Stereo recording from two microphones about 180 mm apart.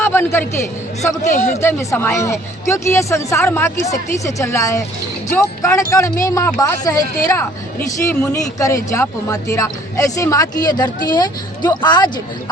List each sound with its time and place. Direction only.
0.0 s a man's voice: 10° left (ahead or behind)
1.6 s speech: 15° left (ahead or behind)